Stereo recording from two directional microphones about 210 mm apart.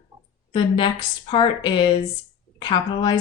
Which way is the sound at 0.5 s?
25° left (ahead or behind).